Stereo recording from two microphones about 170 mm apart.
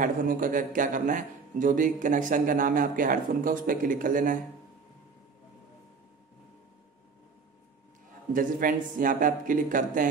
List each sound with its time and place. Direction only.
0.0 s a man's voice: 55° right (ahead or behind)
8.3 s a man's voice: 55° right (ahead or behind)